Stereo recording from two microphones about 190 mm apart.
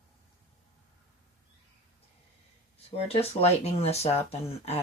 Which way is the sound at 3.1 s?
30° left (ahead or behind).